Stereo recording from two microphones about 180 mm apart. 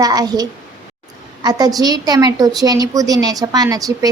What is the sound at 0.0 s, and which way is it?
A woman's voice, 20° right (ahead or behind).